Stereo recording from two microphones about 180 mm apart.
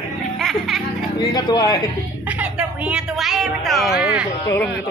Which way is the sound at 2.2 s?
10° right (ahead or behind).